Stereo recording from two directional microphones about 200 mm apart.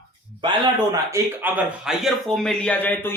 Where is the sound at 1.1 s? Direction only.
10° right (ahead or behind); by 3.1 s 10° left (ahead or behind).